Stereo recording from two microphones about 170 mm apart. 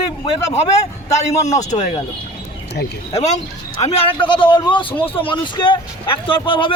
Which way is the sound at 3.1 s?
40° left (ahead or behind).